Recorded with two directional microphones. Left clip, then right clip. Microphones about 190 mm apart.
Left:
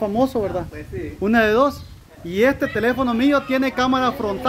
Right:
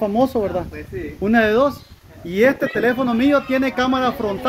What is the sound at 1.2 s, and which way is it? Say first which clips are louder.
Speech: right 1 dB; 5° left (ahead or behind).